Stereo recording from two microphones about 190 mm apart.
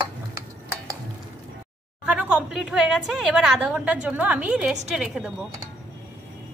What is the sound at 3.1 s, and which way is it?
A woman's voice, 5° right (ahead or behind).